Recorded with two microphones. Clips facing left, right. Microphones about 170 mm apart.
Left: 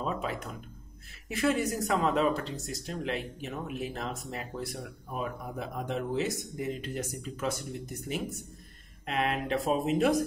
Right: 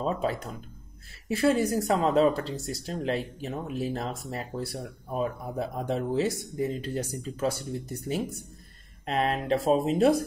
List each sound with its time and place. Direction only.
0.0 s speech: 35° right (ahead or behind)
9.0 s speech: 35° right (ahead or behind)